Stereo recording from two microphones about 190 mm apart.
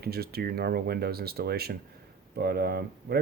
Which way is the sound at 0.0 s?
55° right (ahead or behind).